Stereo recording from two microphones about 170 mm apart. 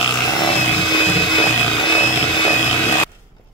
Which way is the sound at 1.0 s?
35° left (ahead or behind).